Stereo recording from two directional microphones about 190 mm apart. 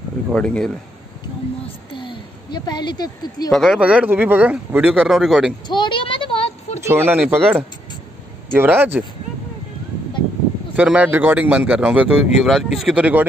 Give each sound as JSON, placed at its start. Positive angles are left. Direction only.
{"t": 0.3, "sound": "speech", "side_deg": 5}
{"t": 1.9, "sound": "speech", "side_deg": 25}
{"t": 3.5, "sound": "a man's voice", "side_deg": 0}
{"t": 5.7, "sound": "a sound", "side_deg": 25}
{"t": 6.9, "sound": "a man's voice", "side_deg": -10}
{"t": 10.8, "sound": "a man's voice", "side_deg": -5}